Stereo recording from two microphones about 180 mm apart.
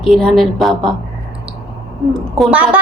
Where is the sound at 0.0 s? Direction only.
Centre (ahead or behind).